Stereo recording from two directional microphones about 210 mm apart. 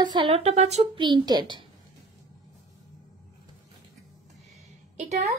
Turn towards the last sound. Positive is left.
turn(degrees=-30)  # may be behind; listen again after turning